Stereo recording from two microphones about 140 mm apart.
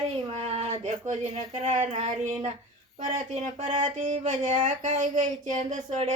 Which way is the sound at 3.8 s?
60° right (ahead or behind).